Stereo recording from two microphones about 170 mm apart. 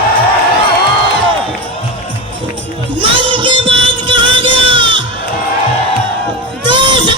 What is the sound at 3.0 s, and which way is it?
Music, 30° right (ahead or behind).